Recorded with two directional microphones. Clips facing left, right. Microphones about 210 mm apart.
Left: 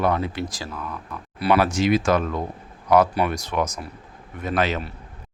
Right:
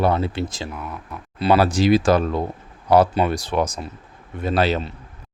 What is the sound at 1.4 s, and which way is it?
Speech, 30° right (ahead or behind).